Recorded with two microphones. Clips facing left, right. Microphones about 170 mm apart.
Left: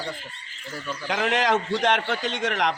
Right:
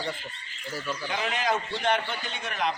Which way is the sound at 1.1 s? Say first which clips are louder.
Left 6 dB; 90° left.